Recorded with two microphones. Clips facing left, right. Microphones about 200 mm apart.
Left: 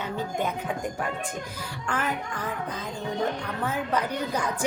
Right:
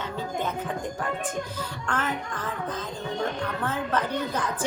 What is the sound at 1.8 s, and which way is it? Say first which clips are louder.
Speech: left 1 dB; 10° left (ahead or behind).